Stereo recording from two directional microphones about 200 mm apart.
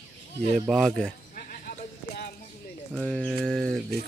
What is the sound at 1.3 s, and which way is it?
Sheep, 45° left (ahead or behind).